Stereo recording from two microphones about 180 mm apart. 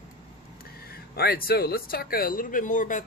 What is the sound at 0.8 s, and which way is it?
Speech, 60° left (ahead or behind).